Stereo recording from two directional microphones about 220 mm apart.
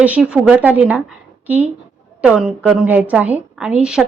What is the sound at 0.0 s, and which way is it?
A woman's voice, 5° right (ahead or behind).